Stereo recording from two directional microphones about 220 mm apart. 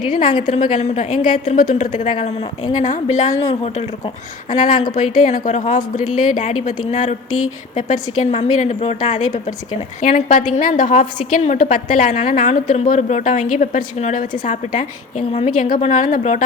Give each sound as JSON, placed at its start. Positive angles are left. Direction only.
{"t": 0.2, "sound": "speech", "side_deg": 20}
{"t": 0.4, "sound": "a woman's voice", "side_deg": 35}
{"t": 5.2, "sound": "a woman's voice", "side_deg": 35}
{"t": 7.3, "sound": "speech", "side_deg": 75}
{"t": 8.2, "sound": "a woman's voice", "side_deg": 30}